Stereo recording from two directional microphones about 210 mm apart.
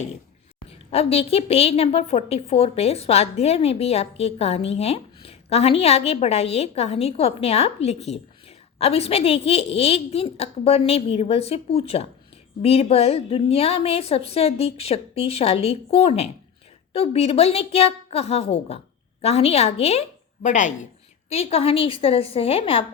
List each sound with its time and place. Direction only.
0.7 s a woman's voice: 30° left (ahead or behind)